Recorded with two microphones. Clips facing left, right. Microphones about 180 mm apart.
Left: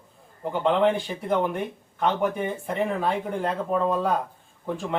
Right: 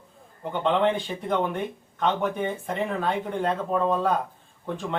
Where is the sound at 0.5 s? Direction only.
5° left (ahead or behind).